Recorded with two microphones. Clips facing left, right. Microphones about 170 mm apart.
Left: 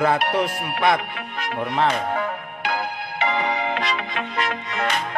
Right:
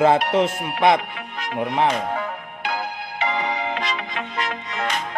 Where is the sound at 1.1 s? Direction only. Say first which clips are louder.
Left 1 dB; 60° left (ahead or behind).